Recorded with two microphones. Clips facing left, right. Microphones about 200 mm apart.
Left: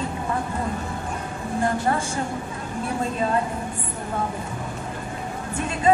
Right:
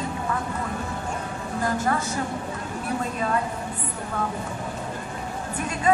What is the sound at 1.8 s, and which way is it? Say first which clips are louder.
Speech: left 1 dB; 30° left (ahead or behind).